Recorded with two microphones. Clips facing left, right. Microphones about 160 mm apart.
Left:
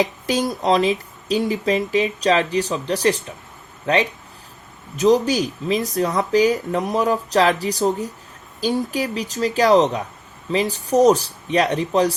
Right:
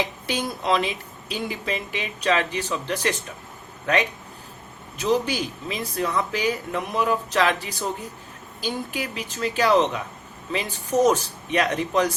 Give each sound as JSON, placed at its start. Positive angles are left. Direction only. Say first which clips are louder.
{"t": 0.0, "sound": "speech", "louder": "left 6 dB", "side_deg": 40}